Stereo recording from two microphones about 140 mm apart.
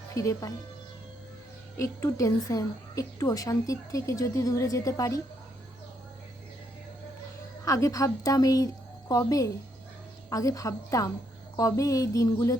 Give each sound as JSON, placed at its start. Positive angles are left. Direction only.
{"t": 0.1, "sound": "speech", "side_deg": 25}
{"t": 1.7, "sound": "a woman's voice", "side_deg": 20}
{"t": 7.6, "sound": "a woman's voice", "side_deg": 25}